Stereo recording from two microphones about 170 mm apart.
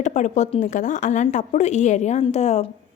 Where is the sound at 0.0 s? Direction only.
45° left (ahead or behind).